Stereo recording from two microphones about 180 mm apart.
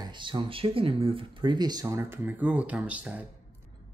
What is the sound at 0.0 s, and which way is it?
Speech, 25° right (ahead or behind).